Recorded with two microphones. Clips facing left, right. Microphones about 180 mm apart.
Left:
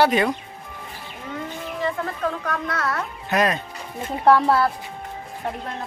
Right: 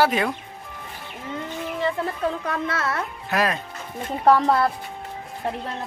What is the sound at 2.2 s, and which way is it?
Speech, 25° right (ahead or behind).